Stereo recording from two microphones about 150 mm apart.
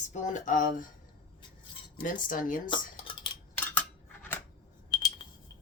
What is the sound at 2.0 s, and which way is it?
Speech, 65° left (ahead or behind).